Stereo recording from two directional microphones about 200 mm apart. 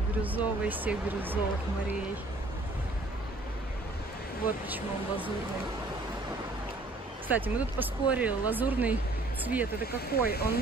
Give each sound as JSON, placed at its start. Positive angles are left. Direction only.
{"t": 0.2, "sound": "speech", "side_deg": -10}
{"t": 4.6, "sound": "speech", "side_deg": -10}
{"t": 7.2, "sound": "speech", "side_deg": -10}
{"t": 9.8, "sound": "speech", "side_deg": 50}